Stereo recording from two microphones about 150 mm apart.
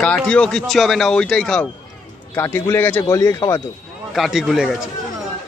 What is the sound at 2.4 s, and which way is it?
A man's voice, 15° left (ahead or behind).